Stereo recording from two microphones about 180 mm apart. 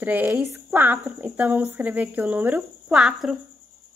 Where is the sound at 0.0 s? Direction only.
10° right (ahead or behind).